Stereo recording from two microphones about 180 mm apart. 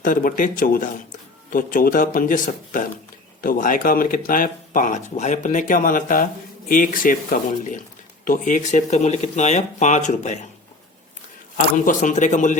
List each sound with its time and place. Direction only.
0.0 s speech: 50° left (ahead or behind)
11.9 s speech: 45° left (ahead or behind)